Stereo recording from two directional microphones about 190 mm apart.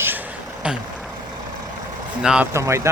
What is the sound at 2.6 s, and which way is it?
Speech, 15° right (ahead or behind).